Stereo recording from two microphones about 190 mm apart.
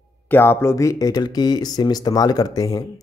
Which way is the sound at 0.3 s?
10° left (ahead or behind).